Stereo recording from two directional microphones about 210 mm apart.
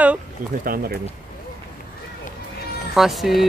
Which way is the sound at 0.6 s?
45° right (ahead or behind).